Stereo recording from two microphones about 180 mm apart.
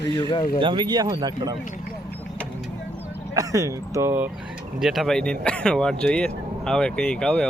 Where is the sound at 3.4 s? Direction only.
20° right (ahead or behind).